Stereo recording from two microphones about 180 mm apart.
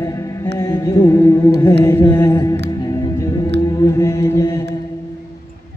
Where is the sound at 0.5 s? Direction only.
15° left (ahead or behind).